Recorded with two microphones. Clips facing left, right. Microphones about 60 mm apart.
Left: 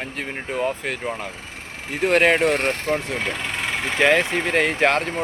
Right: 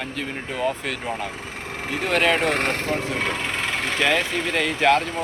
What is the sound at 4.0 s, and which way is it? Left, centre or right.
Speech, left.